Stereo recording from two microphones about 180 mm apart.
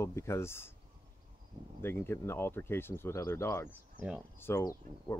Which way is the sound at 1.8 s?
10° left (ahead or behind).